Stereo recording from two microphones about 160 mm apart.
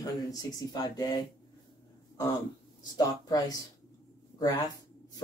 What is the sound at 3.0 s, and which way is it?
Speech, 25° left (ahead or behind).